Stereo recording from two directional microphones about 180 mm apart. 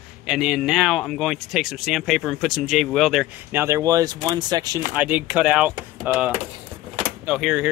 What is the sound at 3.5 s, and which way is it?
Speech, 15° right (ahead or behind).